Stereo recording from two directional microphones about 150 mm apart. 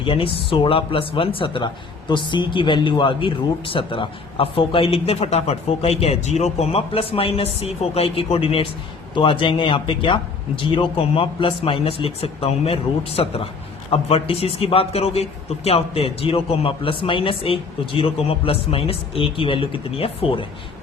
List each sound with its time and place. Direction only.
0.0 s speech: 35° left (ahead or behind)